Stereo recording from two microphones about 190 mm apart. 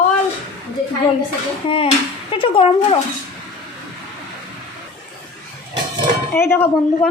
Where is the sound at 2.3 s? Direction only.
30° left (ahead or behind).